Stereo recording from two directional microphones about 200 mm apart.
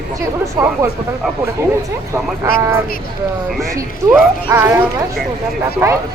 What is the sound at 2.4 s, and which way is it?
Speech, 15° right (ahead or behind).